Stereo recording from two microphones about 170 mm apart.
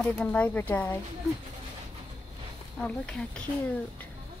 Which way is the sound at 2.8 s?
5° left (ahead or behind).